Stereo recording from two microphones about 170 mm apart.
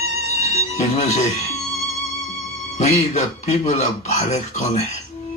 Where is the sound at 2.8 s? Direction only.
40° left (ahead or behind).